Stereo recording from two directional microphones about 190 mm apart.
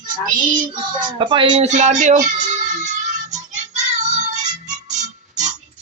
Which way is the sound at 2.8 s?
40° right (ahead or behind).